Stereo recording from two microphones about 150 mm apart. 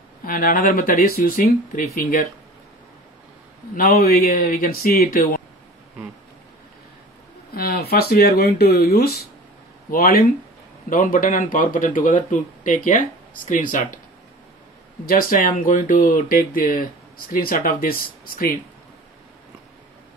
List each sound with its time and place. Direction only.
0.2 s speech: 70° left (ahead or behind)
3.7 s speech: 70° left (ahead or behind)
7.5 s speech: 90° left
10.9 s speech: 65° left (ahead or behind)
15.0 s speech: 70° left (ahead or behind)